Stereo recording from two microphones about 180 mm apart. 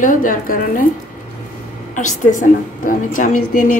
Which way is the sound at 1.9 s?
45° left (ahead or behind).